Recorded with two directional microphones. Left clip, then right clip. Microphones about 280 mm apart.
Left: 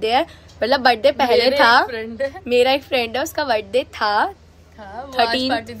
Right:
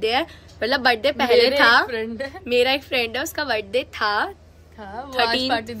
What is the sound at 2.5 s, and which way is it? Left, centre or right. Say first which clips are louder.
A woman's voice: left 3 dB; centre.